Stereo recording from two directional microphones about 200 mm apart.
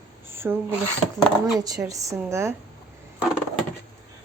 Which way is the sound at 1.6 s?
20° right (ahead or behind).